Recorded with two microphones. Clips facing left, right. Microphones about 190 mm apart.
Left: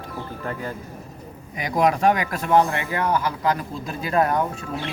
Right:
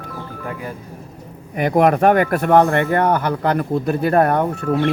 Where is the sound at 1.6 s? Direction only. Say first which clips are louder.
Right 6 dB; 60° right (ahead or behind).